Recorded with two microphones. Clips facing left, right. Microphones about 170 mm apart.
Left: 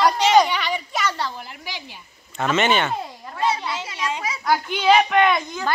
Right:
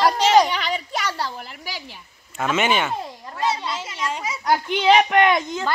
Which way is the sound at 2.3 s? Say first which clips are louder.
Left 1 dB; 5° right (ahead or behind).